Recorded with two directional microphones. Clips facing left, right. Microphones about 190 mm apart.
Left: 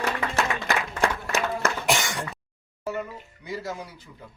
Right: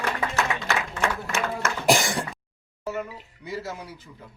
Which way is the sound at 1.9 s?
35° right (ahead or behind).